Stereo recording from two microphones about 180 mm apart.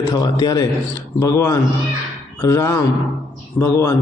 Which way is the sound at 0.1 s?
20° left (ahead or behind).